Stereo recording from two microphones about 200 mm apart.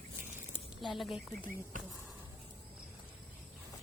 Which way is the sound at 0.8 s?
Centre (ahead or behind).